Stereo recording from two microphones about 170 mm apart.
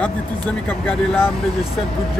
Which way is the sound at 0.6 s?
5° left (ahead or behind).